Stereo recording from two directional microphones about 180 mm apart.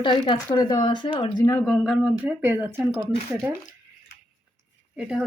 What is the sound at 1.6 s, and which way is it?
Speech, centre (ahead or behind).